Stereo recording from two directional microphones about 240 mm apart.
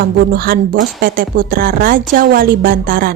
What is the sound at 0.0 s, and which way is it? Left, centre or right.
A woman's voice, right.